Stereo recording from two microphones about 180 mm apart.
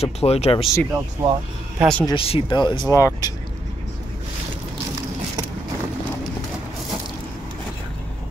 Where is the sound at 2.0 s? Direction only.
30° left (ahead or behind).